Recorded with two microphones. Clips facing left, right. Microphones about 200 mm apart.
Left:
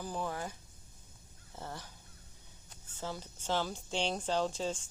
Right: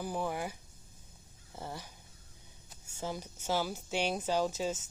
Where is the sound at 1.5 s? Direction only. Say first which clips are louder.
Right 2 dB; 10° right (ahead or behind).